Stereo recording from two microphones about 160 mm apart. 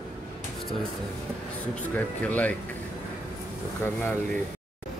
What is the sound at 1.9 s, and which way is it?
Speech, 10° left (ahead or behind).